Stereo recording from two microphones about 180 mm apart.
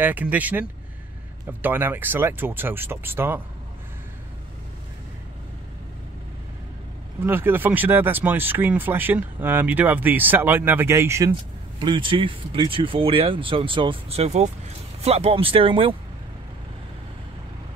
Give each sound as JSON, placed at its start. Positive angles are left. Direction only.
{"t": 0.0, "sound": "speech", "side_deg": -10}
{"t": 7.2, "sound": "speech", "side_deg": -10}
{"t": 11.8, "sound": "speech", "side_deg": -25}